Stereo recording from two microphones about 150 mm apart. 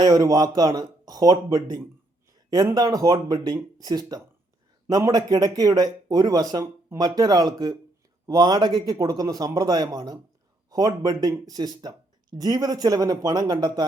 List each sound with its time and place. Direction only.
0.0 s speech: 25° right (ahead or behind)